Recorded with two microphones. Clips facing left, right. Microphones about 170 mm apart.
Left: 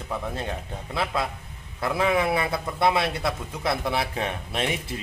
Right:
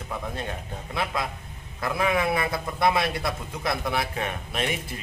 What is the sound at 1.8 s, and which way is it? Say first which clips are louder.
A man's voice: left 2 dB; 25° left (ahead or behind).